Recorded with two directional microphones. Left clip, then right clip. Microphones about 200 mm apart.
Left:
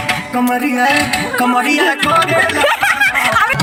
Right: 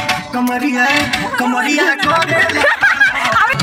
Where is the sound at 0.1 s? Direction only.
15° left (ahead or behind).